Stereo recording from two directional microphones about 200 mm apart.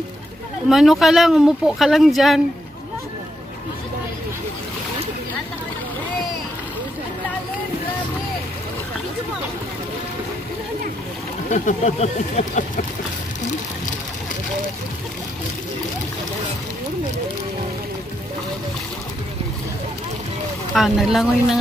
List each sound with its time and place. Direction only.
0.7 s speech: centre (ahead or behind)
11.5 s speech: 35° left (ahead or behind)
20.7 s speech: centre (ahead or behind)